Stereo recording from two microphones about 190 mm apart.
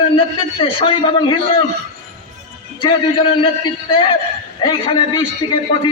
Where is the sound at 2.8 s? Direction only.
25° left (ahead or behind).